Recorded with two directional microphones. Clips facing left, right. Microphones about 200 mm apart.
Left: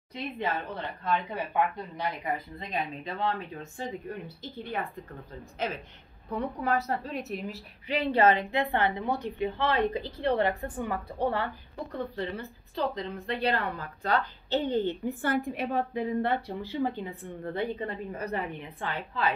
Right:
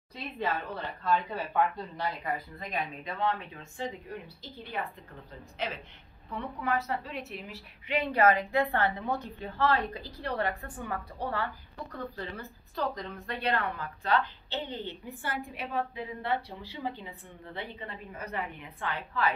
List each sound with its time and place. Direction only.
0.1 s a woman's voice: 20° left (ahead or behind)
3.0 s speech: 35° left (ahead or behind)
6.3 s a woman's voice: 40° left (ahead or behind)
12.7 s a woman's voice: 25° left (ahead or behind)